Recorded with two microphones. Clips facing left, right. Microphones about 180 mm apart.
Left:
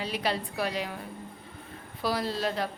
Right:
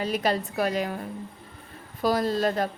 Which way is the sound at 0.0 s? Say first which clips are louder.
Right 5 dB; 45° right (ahead or behind).